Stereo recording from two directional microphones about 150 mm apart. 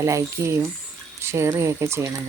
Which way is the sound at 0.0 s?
20° right (ahead or behind).